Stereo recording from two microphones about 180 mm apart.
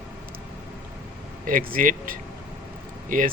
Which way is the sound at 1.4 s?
50° right (ahead or behind).